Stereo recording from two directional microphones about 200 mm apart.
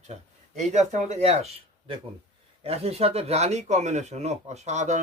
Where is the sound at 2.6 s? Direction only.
30° right (ahead or behind).